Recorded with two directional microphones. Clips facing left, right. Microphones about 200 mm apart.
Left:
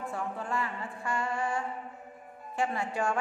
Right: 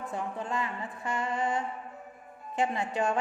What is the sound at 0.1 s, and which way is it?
Music, 20° right (ahead or behind).